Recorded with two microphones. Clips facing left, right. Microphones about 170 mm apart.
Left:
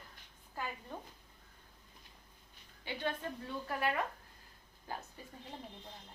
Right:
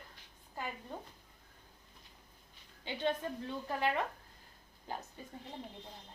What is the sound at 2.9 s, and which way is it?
Speech, 20° right (ahead or behind).